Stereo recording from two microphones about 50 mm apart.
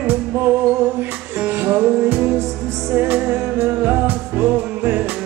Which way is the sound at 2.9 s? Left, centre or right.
Right.